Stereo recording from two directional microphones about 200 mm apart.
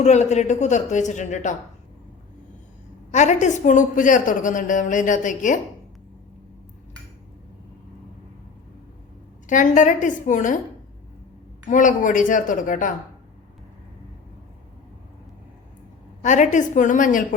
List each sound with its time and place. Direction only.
0.0 s a woman's voice: 35° left (ahead or behind)
3.1 s a woman's voice: 35° left (ahead or behind)
9.5 s a woman's voice: 40° left (ahead or behind)
11.7 s a woman's voice: 40° left (ahead or behind)
16.2 s a woman's voice: 35° left (ahead or behind)